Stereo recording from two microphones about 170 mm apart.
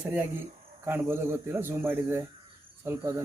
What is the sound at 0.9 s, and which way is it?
Speech, 15° right (ahead or behind).